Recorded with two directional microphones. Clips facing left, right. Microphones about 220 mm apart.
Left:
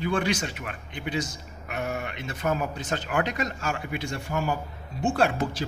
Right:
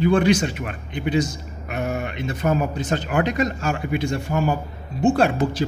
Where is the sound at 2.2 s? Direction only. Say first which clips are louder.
Right 6 dB; 30° right (ahead or behind).